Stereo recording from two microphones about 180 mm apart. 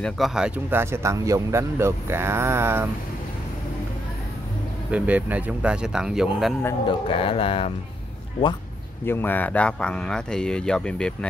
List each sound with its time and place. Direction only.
0.0 s speech: centre (ahead or behind)
4.9 s speech: 10° right (ahead or behind)
6.9 s speech: 30° left (ahead or behind)
9.0 s speech: 10° left (ahead or behind)